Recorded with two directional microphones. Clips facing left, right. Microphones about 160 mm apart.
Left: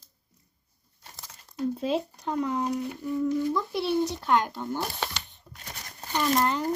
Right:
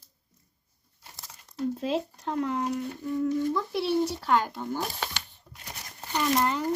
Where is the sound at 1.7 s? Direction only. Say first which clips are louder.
Left 1 dB; centre (ahead or behind).